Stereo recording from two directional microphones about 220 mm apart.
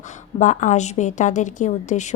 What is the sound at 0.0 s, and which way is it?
A woman's voice, 35° left (ahead or behind).